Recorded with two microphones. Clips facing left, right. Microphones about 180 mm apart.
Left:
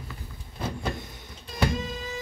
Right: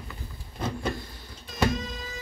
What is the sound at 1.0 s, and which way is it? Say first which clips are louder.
Power windows: left 1 dB; 20° left (ahead or behind).